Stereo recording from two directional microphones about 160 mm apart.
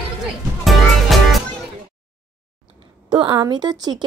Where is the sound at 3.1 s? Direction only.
25° right (ahead or behind).